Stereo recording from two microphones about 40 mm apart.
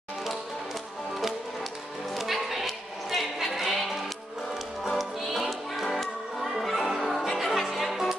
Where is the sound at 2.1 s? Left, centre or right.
Centre.